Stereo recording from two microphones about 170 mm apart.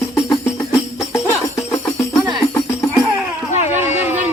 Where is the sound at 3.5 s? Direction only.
40° left (ahead or behind).